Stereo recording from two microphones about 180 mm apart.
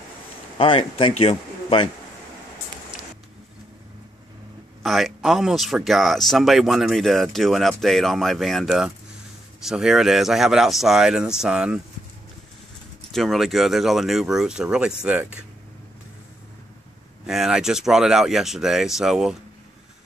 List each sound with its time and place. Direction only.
0.6 s speech: 30° left (ahead or behind)
4.8 s speech: centre (ahead or behind)
13.1 s speech: centre (ahead or behind)
17.3 s speech: 5° right (ahead or behind)